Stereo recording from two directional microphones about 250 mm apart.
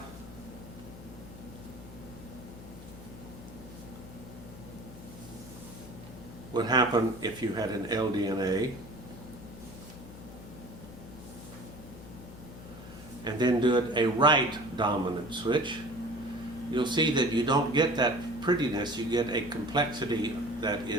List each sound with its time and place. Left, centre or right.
6.5 s speech: centre
13.2 s speech: centre
16.7 s speech: centre